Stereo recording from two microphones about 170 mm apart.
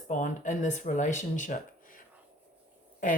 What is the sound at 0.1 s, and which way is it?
Speech, 45° left (ahead or behind).